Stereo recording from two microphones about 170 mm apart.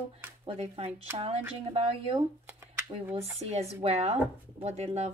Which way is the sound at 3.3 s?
40° right (ahead or behind).